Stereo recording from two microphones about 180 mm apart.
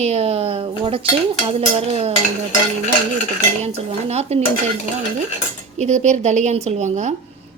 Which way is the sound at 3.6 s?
35° right (ahead or behind).